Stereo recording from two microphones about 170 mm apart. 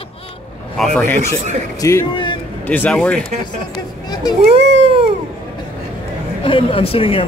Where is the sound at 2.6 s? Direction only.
10° left (ahead or behind).